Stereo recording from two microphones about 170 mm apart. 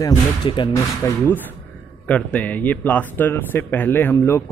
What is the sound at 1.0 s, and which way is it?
Speech, 10° left (ahead or behind).